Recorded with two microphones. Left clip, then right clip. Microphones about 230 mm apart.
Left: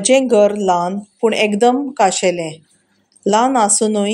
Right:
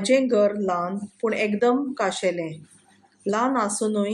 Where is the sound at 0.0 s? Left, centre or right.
Left.